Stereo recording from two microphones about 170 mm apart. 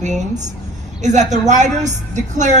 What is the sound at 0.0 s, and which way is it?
A man's voice, 45° right (ahead or behind).